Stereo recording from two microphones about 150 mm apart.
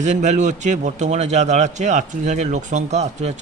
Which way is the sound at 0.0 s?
50° right (ahead or behind).